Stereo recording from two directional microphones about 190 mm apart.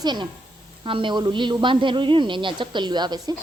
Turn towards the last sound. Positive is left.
turn(degrees=-20)  # may be behind; listen again after turning